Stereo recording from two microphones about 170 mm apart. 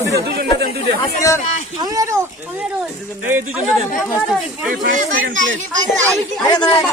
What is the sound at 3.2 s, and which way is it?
Speech, 10° right (ahead or behind).